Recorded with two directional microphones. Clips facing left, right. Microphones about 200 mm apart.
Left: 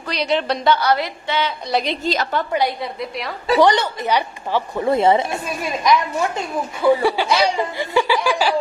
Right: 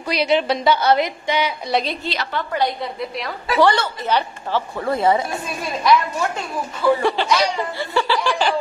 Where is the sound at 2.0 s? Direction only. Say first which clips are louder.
Left 5 dB; 45° left (ahead or behind).